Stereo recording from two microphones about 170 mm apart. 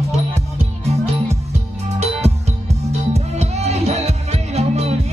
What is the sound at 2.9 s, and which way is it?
Music, 40° right (ahead or behind).